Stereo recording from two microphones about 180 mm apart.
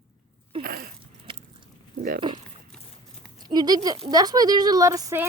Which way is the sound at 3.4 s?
25° right (ahead or behind).